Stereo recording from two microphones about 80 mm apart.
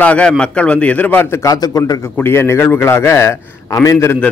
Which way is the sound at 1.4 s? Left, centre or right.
Left.